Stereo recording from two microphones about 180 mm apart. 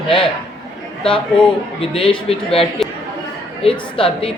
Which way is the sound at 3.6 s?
30° left (ahead or behind).